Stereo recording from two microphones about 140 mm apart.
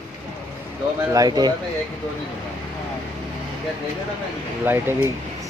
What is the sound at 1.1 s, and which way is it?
Speech, 25° right (ahead or behind).